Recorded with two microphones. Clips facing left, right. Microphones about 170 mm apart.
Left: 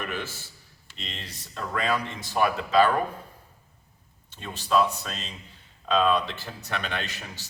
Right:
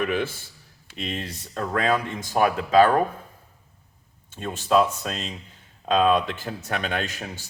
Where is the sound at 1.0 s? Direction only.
50° right (ahead or behind).